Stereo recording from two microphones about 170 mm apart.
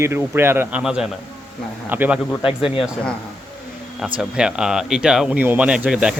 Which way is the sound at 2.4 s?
30° left (ahead or behind).